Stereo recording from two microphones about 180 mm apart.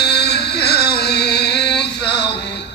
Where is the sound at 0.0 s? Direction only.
65° left (ahead or behind).